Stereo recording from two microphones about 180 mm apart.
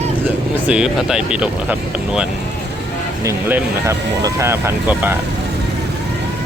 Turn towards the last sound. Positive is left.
turn(degrees=-15)  # may be behind; listen again after turning